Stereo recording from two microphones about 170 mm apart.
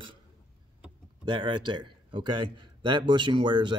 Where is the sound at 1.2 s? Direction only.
30° right (ahead or behind).